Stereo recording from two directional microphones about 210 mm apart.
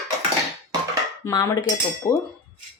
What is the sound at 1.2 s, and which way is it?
Cutlery, 20° left (ahead or behind).